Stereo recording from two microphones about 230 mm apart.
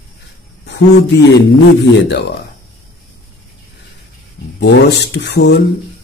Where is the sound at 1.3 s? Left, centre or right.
Left.